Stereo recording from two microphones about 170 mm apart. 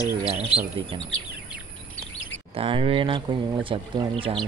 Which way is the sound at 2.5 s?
35° right (ahead or behind).